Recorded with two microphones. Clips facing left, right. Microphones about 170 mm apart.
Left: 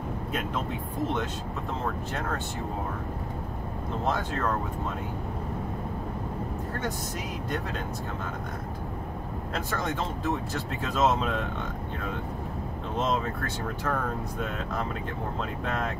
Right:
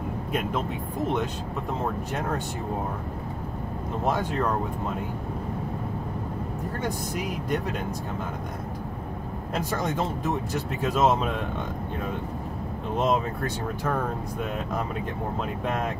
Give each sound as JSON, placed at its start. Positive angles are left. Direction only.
{"t": 4.1, "sound": "speech", "side_deg": -15}
{"t": 9.7, "sound": "speech", "side_deg": -15}
{"t": 13.0, "sound": "speech", "side_deg": -15}
{"t": 15.6, "sound": "speech", "side_deg": -15}